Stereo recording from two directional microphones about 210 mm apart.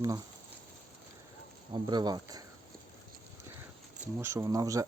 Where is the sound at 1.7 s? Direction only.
20° right (ahead or behind).